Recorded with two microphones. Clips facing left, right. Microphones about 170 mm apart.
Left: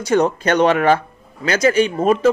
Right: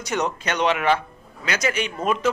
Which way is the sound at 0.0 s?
30° left (ahead or behind).